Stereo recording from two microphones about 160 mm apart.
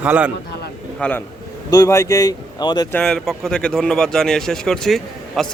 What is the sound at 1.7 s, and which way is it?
Speech, 20° left (ahead or behind).